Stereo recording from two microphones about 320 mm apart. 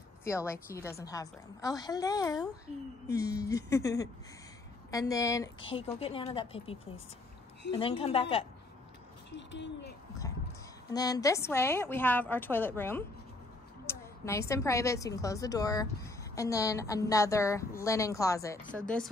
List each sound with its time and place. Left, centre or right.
0.2 s speech: centre
9.3 s speech: left
10.9 s speech: centre
13.8 s a sound: centre
14.5 s speech: centre